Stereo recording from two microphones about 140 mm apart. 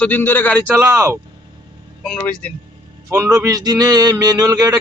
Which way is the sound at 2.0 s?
10° left (ahead or behind).